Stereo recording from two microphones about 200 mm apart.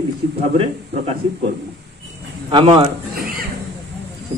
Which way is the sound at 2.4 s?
25° right (ahead or behind).